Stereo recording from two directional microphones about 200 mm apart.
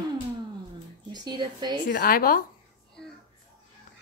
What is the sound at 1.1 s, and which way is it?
Speech, 20° right (ahead or behind).